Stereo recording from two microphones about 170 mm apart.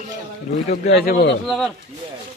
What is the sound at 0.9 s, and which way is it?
Speech, 65° left (ahead or behind).